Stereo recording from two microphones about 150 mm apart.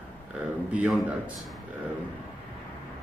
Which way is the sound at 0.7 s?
10° right (ahead or behind).